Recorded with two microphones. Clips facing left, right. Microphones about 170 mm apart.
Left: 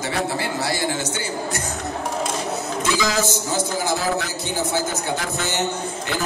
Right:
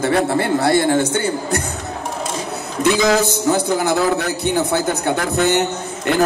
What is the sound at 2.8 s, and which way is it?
A man's voice, 60° right (ahead or behind).